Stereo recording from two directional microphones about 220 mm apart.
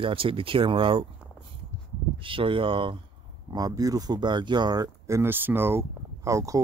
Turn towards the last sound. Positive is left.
turn(degrees=-15)  # may be behind; listen again after turning